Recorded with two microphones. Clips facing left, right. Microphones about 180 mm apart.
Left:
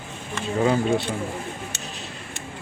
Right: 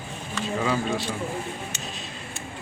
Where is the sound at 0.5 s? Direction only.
50° left (ahead or behind).